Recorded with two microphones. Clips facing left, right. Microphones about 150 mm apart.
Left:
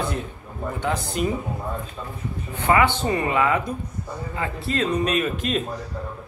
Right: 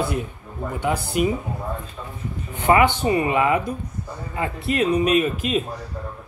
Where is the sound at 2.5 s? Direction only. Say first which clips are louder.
Right 2 dB; 15° right (ahead or behind).